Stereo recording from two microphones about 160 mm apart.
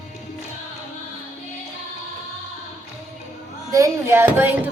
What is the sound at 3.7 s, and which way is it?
Speech, 15° right (ahead or behind).